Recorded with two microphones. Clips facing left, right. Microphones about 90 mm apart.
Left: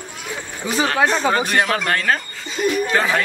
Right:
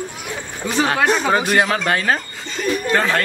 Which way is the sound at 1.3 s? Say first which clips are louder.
Right 2 dB; 10° right (ahead or behind).